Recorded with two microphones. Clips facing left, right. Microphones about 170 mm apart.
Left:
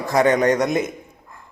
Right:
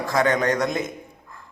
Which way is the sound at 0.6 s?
Centre (ahead or behind).